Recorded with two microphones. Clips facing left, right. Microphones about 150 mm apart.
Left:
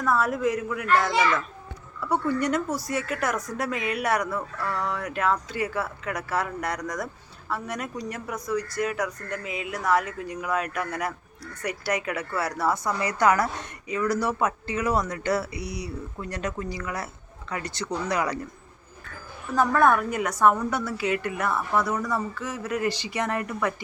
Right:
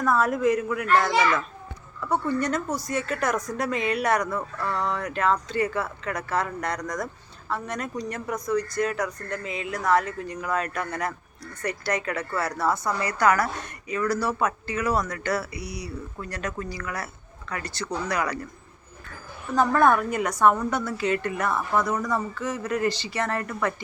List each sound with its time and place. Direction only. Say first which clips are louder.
0.0 s a child's voice: right 2 dB; centre (ahead or behind)
2.3 s a woman's voice: left 1 dB; 10° left (ahead or behind)
19.5 s a child's voice: right 1 dB; centre (ahead or behind)